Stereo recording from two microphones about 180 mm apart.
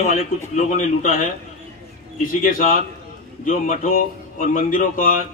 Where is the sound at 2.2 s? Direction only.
50° left (ahead or behind).